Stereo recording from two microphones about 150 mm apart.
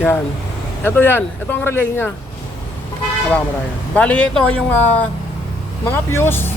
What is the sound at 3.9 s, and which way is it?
Speech, 10° left (ahead or behind).